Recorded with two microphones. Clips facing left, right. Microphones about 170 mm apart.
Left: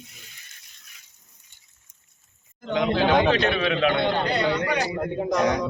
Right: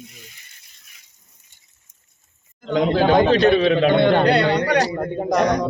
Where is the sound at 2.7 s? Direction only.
40° right (ahead or behind).